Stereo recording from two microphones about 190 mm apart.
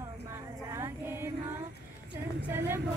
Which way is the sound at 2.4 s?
10° right (ahead or behind).